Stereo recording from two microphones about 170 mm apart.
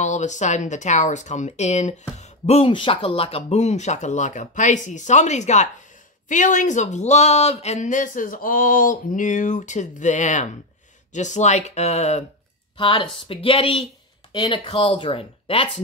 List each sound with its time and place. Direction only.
0.0 s speech: 45° left (ahead or behind)